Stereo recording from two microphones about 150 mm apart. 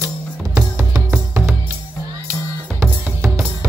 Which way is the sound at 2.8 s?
10° right (ahead or behind).